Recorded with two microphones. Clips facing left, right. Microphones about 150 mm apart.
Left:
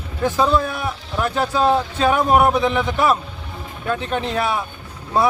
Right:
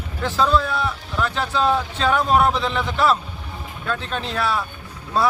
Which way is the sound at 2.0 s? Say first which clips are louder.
Left 2 dB; 15° left (ahead or behind).